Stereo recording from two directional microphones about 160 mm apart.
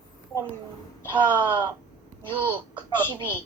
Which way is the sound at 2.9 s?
10° right (ahead or behind).